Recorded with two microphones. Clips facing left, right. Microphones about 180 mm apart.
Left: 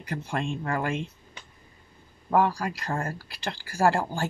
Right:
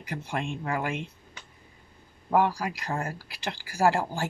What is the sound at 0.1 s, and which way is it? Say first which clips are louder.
Speech: left 2 dB; 5° right (ahead or behind).